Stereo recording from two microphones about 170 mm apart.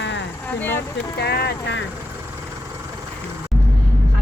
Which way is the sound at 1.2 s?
70° left (ahead or behind).